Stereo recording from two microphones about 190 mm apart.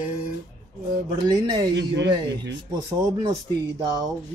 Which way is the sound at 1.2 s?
20° right (ahead or behind).